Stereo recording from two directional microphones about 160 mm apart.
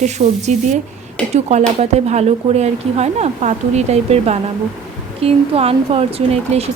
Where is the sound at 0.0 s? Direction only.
45° right (ahead or behind).